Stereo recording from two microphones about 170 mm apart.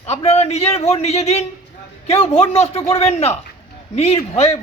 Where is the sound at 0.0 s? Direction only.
40° left (ahead or behind).